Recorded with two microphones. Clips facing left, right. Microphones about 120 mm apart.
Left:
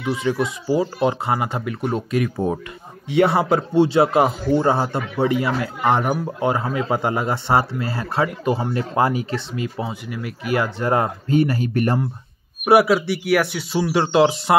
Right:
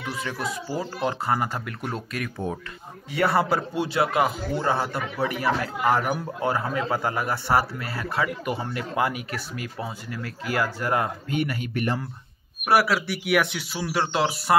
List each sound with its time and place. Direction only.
0.0 s speech: 15° left (ahead or behind)
1.6 s speech: 5° left (ahead or behind)
1.9 s speech: 20° left (ahead or behind)
2.3 s speech: 35° left (ahead or behind)
3.1 s speech: 20° left (ahead or behind); by 12.0 s 45° left (ahead or behind)
12.6 s speech: 20° left (ahead or behind)
13.3 s speech: 5° left (ahead or behind)
13.7 s speech: 20° left (ahead or behind)